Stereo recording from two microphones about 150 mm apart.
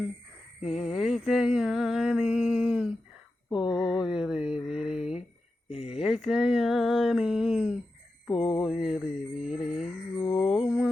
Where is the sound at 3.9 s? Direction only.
5° right (ahead or behind).